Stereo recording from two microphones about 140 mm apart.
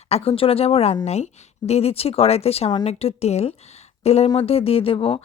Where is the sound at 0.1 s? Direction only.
45° left (ahead or behind).